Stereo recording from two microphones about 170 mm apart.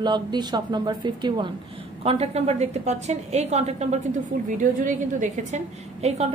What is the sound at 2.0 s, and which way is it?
A woman's voice, 35° right (ahead or behind).